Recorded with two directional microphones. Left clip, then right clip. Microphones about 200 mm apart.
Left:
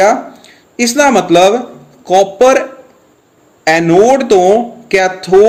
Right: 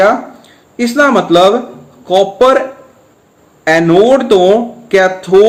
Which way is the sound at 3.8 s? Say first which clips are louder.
Even; 20° left (ahead or behind).